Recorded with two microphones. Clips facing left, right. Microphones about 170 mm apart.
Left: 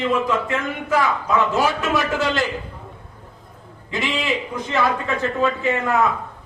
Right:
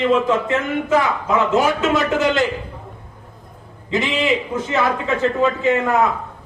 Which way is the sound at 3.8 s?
20° right (ahead or behind).